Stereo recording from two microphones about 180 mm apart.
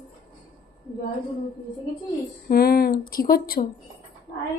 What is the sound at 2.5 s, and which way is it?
Speech, 60° left (ahead or behind).